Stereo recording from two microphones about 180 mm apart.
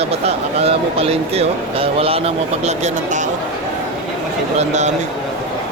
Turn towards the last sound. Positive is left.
turn(degrees=-40)  # may be behind; listen again after turning